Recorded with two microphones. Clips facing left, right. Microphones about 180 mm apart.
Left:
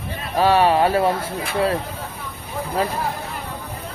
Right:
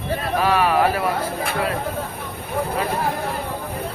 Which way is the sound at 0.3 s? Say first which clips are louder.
Left 3 dB; 30° left (ahead or behind).